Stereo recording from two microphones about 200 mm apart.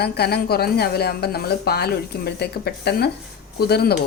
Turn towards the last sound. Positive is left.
turn(degrees=55)  # may be behind; listen again after turning